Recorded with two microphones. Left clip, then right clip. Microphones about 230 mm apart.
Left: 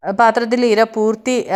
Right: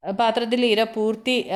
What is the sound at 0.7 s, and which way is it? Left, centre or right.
Speech, left.